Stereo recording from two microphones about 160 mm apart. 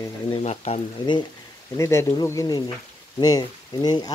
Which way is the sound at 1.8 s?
20° left (ahead or behind).